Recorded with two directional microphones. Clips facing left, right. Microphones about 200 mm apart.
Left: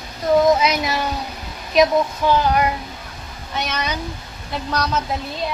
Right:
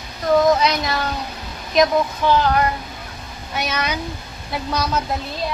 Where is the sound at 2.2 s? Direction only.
10° left (ahead or behind).